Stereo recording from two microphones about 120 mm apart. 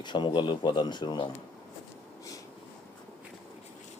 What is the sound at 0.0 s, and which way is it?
Speech, 40° left (ahead or behind).